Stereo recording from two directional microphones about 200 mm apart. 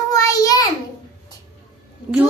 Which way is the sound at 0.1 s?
15° left (ahead or behind).